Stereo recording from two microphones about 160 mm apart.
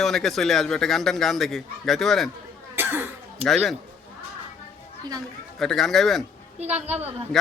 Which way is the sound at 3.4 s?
Centre (ahead or behind).